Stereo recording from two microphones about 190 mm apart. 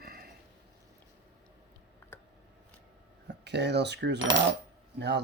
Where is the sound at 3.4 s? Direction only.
65° right (ahead or behind).